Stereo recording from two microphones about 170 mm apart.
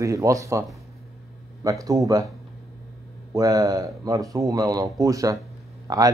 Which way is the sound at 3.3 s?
20° right (ahead or behind).